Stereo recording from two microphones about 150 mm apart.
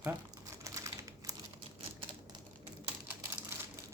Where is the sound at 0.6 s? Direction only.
20° right (ahead or behind).